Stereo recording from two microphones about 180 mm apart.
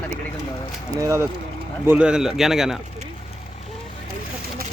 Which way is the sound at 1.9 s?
5° right (ahead or behind).